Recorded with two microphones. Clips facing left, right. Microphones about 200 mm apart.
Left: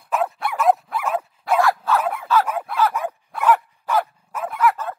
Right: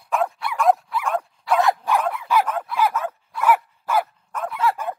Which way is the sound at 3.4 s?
10° right (ahead or behind).